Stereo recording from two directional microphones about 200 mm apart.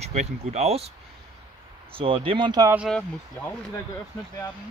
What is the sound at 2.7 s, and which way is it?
Speech, 5° right (ahead or behind).